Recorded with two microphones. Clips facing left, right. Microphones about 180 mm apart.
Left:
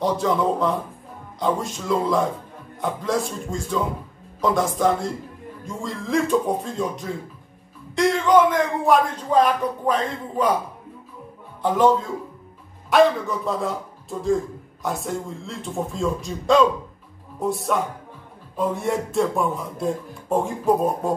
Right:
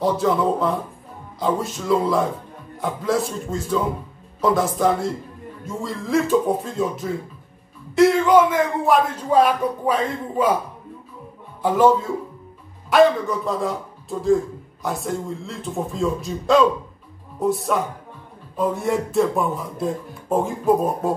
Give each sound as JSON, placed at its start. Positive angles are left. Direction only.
{"t": 0.0, "sound": "speech", "side_deg": 0}
{"t": 11.6, "sound": "speech", "side_deg": -5}